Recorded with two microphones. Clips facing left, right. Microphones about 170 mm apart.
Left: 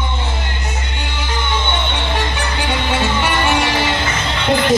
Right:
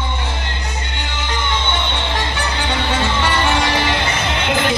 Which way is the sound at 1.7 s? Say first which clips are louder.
Left 1 dB; 20° left (ahead or behind).